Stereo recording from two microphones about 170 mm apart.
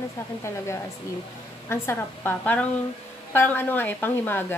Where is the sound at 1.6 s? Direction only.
15° left (ahead or behind).